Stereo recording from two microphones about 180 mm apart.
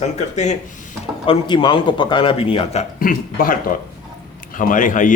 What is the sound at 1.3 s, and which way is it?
A man's voice, 25° left (ahead or behind).